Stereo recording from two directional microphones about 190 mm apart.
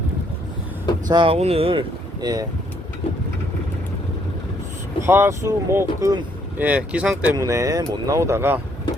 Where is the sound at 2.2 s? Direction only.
20° right (ahead or behind).